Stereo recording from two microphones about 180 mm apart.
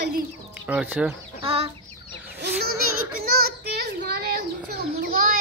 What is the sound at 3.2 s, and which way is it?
Children playing, 60° right (ahead or behind).